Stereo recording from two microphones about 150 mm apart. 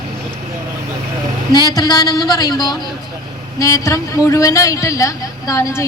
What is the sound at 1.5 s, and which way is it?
A woman's voice, 25° left (ahead or behind).